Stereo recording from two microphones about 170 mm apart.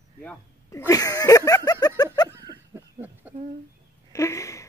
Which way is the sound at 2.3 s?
20° right (ahead or behind).